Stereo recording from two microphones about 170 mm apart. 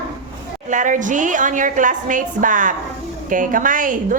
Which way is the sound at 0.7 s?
50° right (ahead or behind).